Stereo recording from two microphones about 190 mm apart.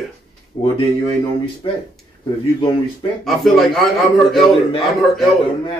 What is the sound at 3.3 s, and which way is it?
A man's voice, centre (ahead or behind).